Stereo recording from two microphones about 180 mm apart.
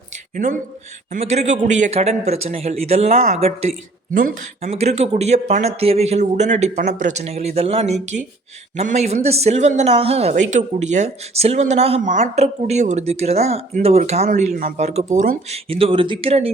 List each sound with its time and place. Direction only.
1.1 s speech: 40° right (ahead or behind)